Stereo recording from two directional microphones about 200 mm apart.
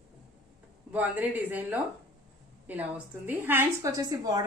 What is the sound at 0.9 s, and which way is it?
A woman's voice, 10° right (ahead or behind).